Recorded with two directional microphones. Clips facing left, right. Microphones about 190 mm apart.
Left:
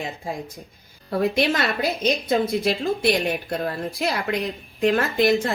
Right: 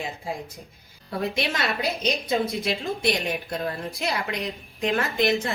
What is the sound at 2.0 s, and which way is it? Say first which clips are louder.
Speech: left 4 dB; 55° left (ahead or behind).